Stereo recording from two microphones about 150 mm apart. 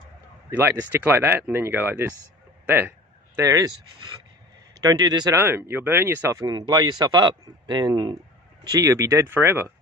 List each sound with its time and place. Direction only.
0.5 s speech: 15° right (ahead or behind)
4.7 s speech: 25° right (ahead or behind)
5.4 s speech: 15° right (ahead or behind)